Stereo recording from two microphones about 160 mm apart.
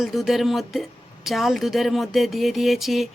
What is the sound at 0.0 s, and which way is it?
A woman's voice, centre (ahead or behind).